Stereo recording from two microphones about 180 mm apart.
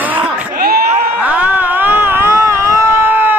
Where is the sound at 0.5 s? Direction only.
55° right (ahead or behind).